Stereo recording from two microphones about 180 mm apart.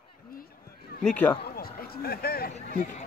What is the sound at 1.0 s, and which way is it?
Speech, 5° left (ahead or behind).